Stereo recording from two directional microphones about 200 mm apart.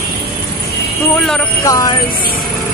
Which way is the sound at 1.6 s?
15° left (ahead or behind).